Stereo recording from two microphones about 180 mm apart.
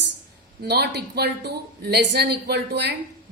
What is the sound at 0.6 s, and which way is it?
A woman's voice, 65° right (ahead or behind).